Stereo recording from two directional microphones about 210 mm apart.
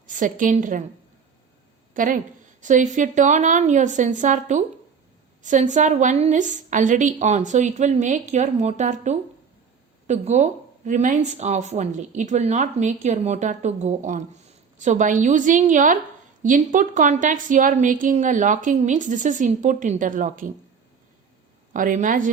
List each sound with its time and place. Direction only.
0.1 s speech: 40° right (ahead or behind)
1.9 s a sound: 40° right (ahead or behind)
2.6 s speech: 35° right (ahead or behind)
21.7 s speech: 40° right (ahead or behind)